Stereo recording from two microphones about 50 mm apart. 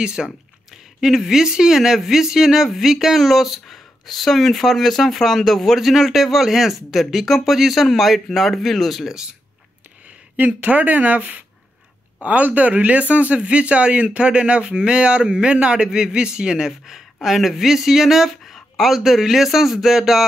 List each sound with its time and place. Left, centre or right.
0.0 s speech: centre
10.3 s speech: right; by 20.2 s centre